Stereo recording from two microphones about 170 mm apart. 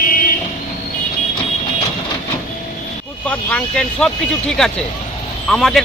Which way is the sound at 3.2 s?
5° left (ahead or behind).